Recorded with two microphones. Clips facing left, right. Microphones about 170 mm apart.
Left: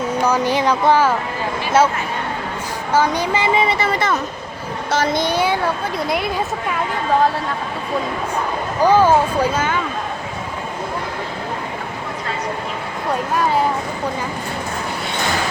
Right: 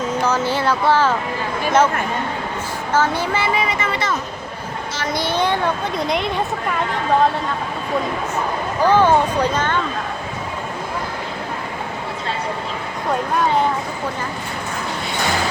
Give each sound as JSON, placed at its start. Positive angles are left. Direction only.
{"t": 0.1, "sound": "speech", "side_deg": 15}
{"t": 2.9, "sound": "speech", "side_deg": 15}
{"t": 5.1, "sound": "speech", "side_deg": 15}
{"t": 8.8, "sound": "speech", "side_deg": 10}